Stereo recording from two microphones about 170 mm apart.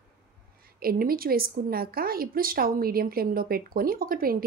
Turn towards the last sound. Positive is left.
turn(degrees=-60)  # may be behind; listen again after turning